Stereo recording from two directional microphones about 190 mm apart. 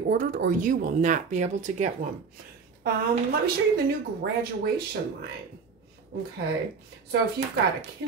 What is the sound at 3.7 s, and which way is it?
Speech, 55° right (ahead or behind).